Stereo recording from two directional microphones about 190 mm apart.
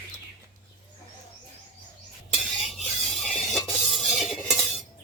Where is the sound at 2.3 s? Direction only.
Centre (ahead or behind).